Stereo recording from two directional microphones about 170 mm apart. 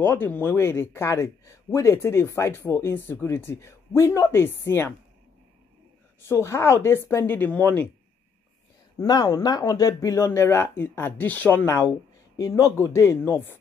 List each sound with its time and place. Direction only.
0.0 s a man's voice: 10° left (ahead or behind)
6.2 s a man's voice: 15° left (ahead or behind)
8.9 s a man's voice: 25° left (ahead or behind)